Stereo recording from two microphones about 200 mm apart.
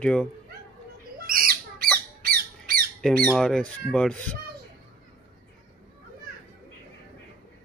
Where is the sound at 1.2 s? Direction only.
45° right (ahead or behind).